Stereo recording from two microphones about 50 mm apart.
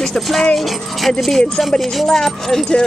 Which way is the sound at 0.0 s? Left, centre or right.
Centre.